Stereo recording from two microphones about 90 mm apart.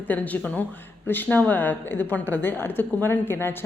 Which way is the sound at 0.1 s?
20° left (ahead or behind).